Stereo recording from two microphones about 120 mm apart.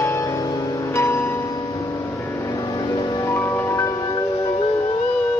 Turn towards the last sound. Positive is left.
turn(degrees=25)  # may be behind; listen again after turning